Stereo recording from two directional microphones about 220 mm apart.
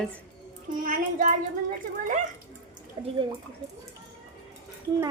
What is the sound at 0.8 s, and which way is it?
Child singing, 35° right (ahead or behind).